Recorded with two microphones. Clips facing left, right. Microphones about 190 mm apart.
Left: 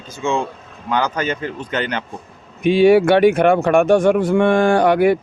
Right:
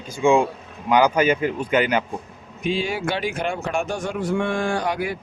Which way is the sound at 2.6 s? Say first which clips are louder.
Left 13 dB; 65° left (ahead or behind).